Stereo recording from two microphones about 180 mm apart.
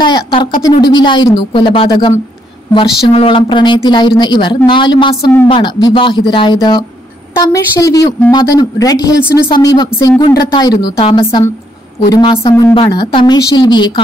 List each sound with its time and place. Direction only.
0.0 s a woman's voice: 25° left (ahead or behind)